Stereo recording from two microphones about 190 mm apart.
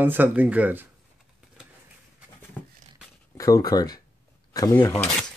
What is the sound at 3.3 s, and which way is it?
Speech, 20° left (ahead or behind).